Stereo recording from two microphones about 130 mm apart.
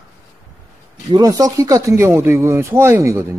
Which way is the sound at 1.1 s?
30° right (ahead or behind).